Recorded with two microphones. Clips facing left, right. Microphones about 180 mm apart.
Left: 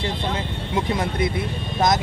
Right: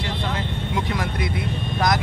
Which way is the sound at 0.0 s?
25° left (ahead or behind).